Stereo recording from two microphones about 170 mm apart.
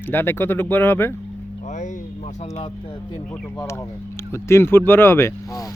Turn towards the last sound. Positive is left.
turn(degrees=15)  # may be behind; listen again after turning